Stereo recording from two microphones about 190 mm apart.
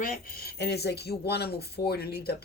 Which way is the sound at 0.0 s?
55° left (ahead or behind).